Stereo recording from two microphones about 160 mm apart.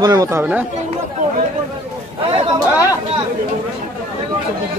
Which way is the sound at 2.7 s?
20° left (ahead or behind).